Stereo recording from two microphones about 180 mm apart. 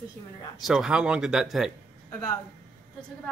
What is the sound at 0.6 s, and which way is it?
Speech, 5° right (ahead or behind).